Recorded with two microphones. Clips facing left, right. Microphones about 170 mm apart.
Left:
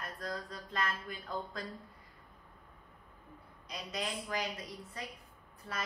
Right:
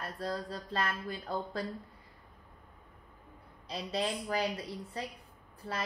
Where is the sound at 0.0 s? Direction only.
30° right (ahead or behind).